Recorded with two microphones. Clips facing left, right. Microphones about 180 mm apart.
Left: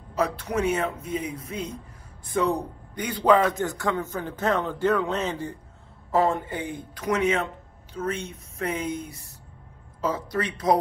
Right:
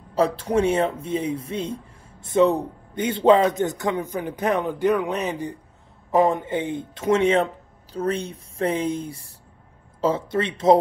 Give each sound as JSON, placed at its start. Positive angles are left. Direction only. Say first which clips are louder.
{"t": 0.1, "sound": "a man's voice", "louder": "right 6 dB", "side_deg": -30}